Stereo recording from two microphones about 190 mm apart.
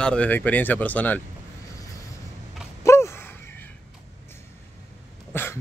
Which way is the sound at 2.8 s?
15° left (ahead or behind).